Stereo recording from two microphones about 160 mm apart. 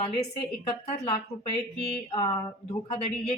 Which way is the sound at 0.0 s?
40° left (ahead or behind).